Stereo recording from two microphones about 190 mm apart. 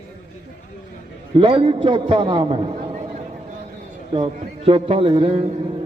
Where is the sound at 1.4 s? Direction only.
30° right (ahead or behind).